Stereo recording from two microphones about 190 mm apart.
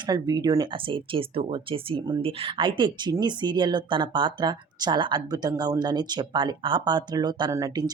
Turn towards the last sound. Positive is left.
turn(degrees=-20)  # may be behind; listen again after turning